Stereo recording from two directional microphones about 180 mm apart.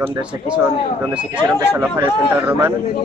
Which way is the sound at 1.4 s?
10° right (ahead or behind).